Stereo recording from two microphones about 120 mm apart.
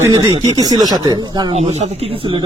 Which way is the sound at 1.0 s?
35° right (ahead or behind).